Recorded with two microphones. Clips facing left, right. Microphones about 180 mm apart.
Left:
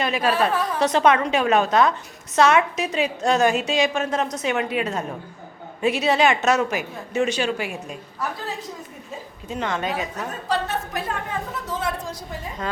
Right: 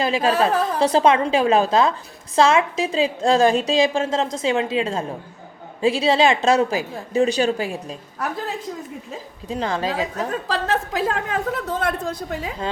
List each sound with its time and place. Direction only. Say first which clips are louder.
0.0 s a woman's voice: right 2 dB; 25° right (ahead or behind)
9.5 s a woman's voice: right 2 dB; 30° right (ahead or behind)
10.5 s a woman's voice: even; 90° right